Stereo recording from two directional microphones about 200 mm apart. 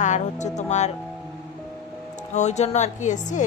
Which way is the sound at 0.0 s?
35° left (ahead or behind).